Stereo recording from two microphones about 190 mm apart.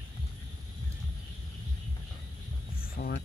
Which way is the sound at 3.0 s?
55° left (ahead or behind).